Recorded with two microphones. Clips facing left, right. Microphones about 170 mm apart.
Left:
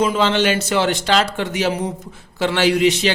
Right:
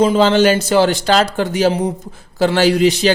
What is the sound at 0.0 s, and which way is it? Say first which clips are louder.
A man's voice: right 5 dB; 35° right (ahead or behind).